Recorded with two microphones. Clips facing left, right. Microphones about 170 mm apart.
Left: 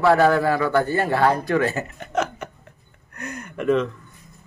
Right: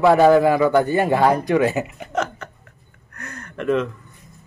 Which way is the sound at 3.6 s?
Centre (ahead or behind).